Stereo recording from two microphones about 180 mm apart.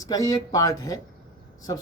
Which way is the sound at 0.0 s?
20° left (ahead or behind).